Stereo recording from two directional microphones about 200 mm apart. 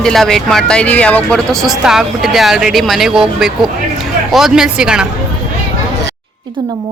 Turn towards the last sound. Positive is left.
turn(degrees=-5)  # may be behind; listen again after turning